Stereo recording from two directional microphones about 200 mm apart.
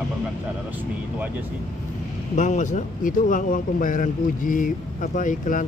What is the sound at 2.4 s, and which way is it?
Speech, 40° left (ahead or behind).